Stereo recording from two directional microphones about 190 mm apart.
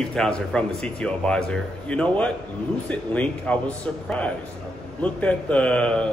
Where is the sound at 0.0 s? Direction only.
5° left (ahead or behind).